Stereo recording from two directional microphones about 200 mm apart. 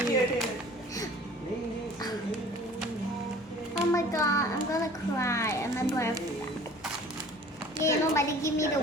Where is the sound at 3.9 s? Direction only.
15° left (ahead or behind).